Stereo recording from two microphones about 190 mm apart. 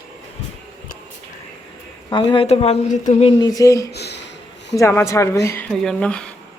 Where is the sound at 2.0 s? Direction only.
25° left (ahead or behind).